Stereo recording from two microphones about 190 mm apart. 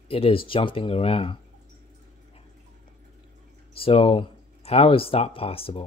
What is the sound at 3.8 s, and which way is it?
Speech, 30° left (ahead or behind).